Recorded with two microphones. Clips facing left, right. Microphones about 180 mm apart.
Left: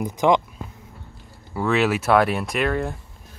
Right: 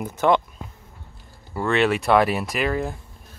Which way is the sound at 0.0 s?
15° left (ahead or behind).